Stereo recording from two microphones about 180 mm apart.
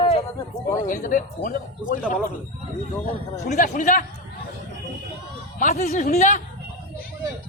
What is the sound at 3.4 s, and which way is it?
Speech, 45° left (ahead or behind).